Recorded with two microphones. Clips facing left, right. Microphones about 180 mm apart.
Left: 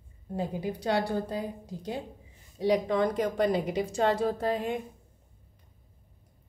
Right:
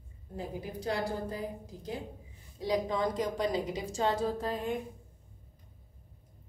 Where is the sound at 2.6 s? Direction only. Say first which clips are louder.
Left 5 dB; 65° left (ahead or behind).